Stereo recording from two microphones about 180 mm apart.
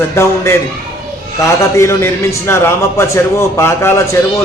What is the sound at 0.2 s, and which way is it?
Speech, 15° left (ahead or behind).